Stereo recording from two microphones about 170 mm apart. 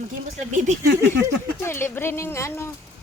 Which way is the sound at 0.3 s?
45° right (ahead or behind).